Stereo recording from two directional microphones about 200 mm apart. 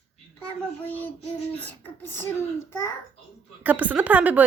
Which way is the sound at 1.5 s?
10° left (ahead or behind).